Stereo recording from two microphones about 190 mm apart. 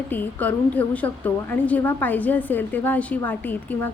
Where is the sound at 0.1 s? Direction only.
10° left (ahead or behind).